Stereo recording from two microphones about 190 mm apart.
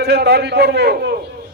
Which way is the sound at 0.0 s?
60° right (ahead or behind).